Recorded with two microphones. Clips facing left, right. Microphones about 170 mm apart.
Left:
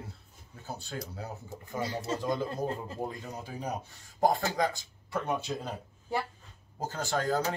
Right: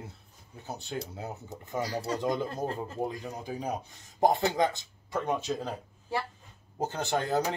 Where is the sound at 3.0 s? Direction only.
15° right (ahead or behind).